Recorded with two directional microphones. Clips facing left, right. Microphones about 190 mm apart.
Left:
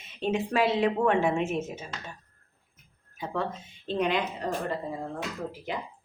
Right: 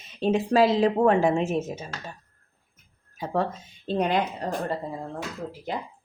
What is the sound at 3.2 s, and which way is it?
A woman's voice, 40° right (ahead or behind).